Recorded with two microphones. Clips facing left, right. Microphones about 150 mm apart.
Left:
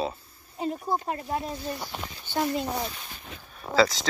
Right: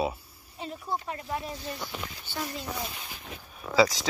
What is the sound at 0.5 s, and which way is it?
Speech, 40° left (ahead or behind).